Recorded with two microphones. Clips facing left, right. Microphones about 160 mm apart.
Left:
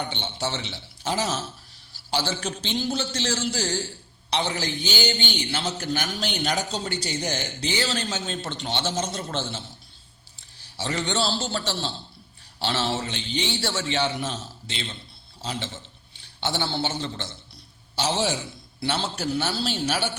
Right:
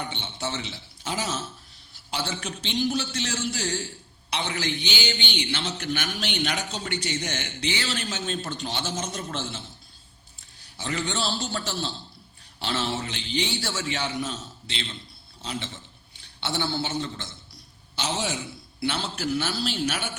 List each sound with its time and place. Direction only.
0.1 s a man's voice: 30° left (ahead or behind)
10.8 s a man's voice: 30° left (ahead or behind)
15.4 s a man's voice: 35° left (ahead or behind)